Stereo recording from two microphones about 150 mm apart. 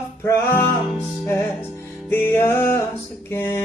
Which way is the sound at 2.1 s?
15° left (ahead or behind).